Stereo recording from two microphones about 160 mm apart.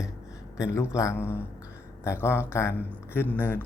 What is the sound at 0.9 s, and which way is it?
Speech, 15° left (ahead or behind).